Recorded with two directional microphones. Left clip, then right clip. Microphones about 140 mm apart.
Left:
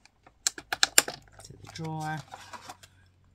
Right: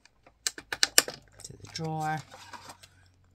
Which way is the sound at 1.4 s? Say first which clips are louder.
Right 3 dB; 40° right (ahead or behind).